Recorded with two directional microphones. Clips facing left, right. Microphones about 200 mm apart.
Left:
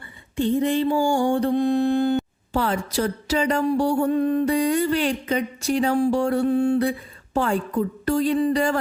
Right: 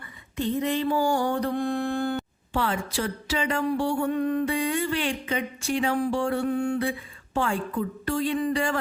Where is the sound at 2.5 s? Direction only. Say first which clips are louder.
Left 4 dB; 40° left (ahead or behind).